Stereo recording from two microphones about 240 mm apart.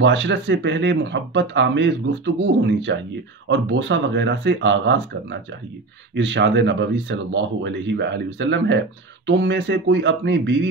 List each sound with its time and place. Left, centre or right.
0.0 s speech: right